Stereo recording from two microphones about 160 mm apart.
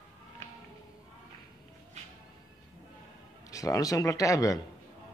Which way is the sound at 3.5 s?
20° left (ahead or behind).